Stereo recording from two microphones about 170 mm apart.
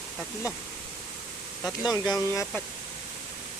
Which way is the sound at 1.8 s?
20° left (ahead or behind).